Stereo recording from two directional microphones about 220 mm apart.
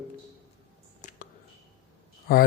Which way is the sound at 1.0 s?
35° left (ahead or behind).